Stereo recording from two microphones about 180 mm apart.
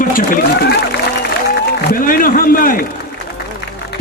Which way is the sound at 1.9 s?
50° left (ahead or behind).